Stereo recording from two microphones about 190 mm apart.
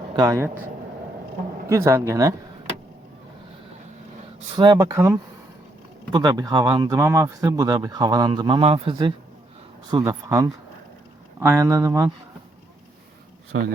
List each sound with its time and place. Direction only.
0.2 s speech: 15° right (ahead or behind)
1.6 s speech: 15° right (ahead or behind)
4.5 s speech: 25° right (ahead or behind)
13.5 s speech: 75° right (ahead or behind)